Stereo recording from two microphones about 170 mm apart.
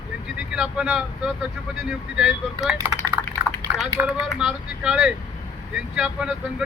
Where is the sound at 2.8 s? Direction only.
20° right (ahead or behind).